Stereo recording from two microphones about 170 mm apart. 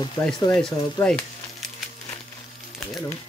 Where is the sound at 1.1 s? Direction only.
5° left (ahead or behind).